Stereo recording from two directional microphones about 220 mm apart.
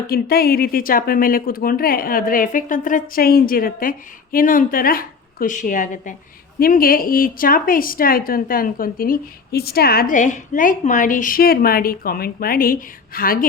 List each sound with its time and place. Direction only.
0.1 s a woman's voice: 45° left (ahead or behind)